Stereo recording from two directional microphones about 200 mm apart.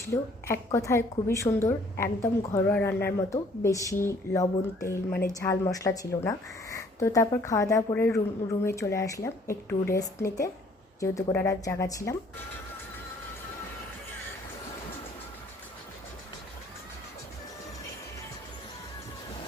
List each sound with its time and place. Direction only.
0.1 s speech: 15° left (ahead or behind)